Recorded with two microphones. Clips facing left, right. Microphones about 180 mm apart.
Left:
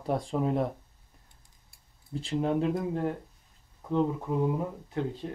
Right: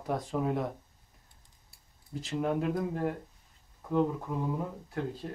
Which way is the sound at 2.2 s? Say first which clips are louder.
Left 3 dB; 30° left (ahead or behind).